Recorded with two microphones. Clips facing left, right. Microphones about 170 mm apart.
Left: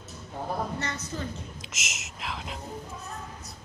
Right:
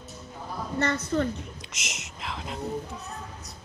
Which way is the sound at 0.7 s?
60° right (ahead or behind).